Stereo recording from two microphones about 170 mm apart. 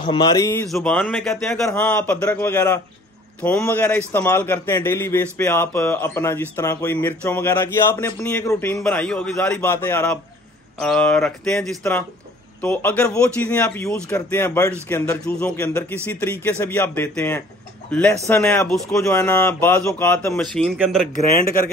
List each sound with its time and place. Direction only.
0.0 s speech: 25° left (ahead or behind)
0.7 s a man's voice: centre (ahead or behind); by 15.1 s 20° left (ahead or behind)
15.2 s a man's voice: 5° left (ahead or behind)